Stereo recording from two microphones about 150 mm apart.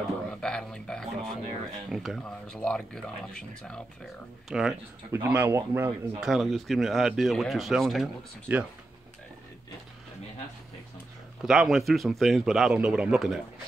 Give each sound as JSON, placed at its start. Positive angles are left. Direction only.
{"t": 0.3, "sound": "a man's voice", "side_deg": 5}
{"t": 5.1, "sound": "speech", "side_deg": -15}
{"t": 6.2, "sound": "a man's voice", "side_deg": 0}
{"t": 8.5, "sound": "speech", "side_deg": -10}
{"t": 11.4, "sound": "a man's voice", "side_deg": 0}